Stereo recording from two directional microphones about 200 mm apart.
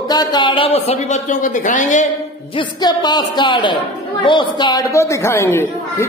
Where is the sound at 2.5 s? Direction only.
20° left (ahead or behind).